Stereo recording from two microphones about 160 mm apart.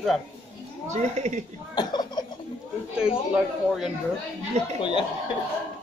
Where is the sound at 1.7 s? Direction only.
25° left (ahead or behind).